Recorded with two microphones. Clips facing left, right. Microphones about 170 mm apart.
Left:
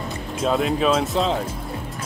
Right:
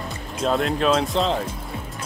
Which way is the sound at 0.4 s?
Centre (ahead or behind).